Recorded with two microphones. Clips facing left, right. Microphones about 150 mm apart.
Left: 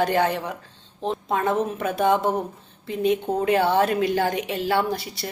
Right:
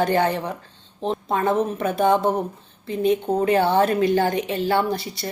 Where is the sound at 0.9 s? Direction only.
Centre (ahead or behind).